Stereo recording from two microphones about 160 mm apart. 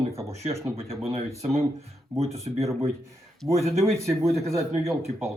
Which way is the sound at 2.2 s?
40° right (ahead or behind).